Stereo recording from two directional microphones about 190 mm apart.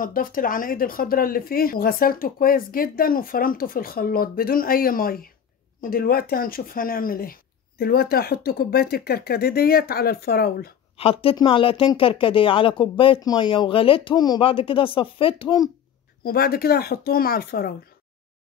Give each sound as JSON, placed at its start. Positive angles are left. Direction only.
{"t": 0.0, "sound": "speech", "side_deg": 45}
{"t": 11.0, "sound": "speech", "side_deg": 30}
{"t": 16.3, "sound": "speech", "side_deg": 55}